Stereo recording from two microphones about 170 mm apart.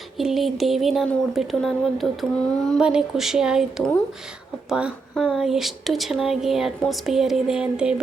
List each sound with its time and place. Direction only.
0.2 s speech: centre (ahead or behind)